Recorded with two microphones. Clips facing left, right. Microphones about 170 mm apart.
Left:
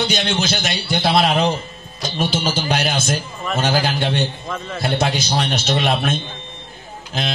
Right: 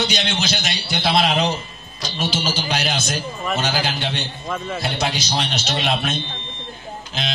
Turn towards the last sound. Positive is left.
turn(degrees=50)  # may be behind; listen again after turning